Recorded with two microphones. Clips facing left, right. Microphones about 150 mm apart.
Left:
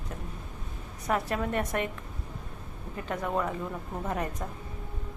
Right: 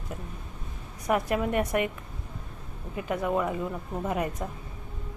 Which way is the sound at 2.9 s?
10° right (ahead or behind).